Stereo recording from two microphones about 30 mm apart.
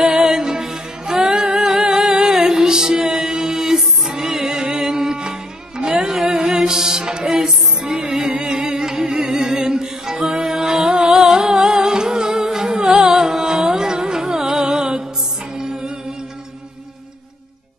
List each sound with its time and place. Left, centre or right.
0.2 s music: centre
4.6 s mantra: right
5.2 s music: right